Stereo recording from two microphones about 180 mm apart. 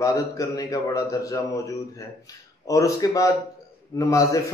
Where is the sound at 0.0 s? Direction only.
20° left (ahead or behind).